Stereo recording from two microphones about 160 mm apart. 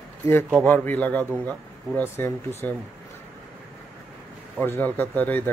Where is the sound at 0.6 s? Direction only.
10° left (ahead or behind).